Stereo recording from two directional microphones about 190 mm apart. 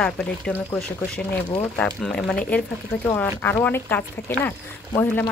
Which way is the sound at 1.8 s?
5° left (ahead or behind).